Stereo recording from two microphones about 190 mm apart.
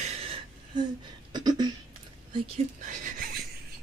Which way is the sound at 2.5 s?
40° right (ahead or behind).